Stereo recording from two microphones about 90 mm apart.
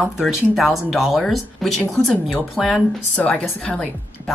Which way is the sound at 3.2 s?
15° left (ahead or behind).